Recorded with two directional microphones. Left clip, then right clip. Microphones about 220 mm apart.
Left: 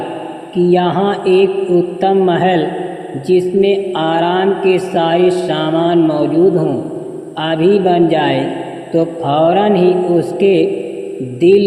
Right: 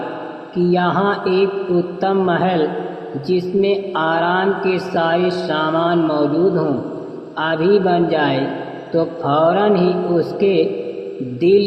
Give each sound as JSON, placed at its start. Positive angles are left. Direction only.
{"t": 0.7, "sound": "speech", "side_deg": 35}